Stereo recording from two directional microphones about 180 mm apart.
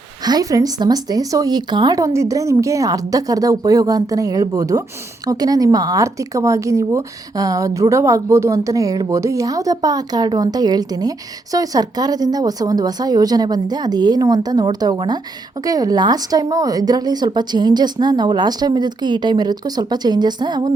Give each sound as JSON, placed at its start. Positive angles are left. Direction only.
{"t": 0.3, "sound": "speech", "side_deg": -20}